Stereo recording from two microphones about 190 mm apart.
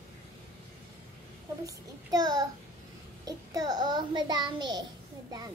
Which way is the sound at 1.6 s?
20° right (ahead or behind).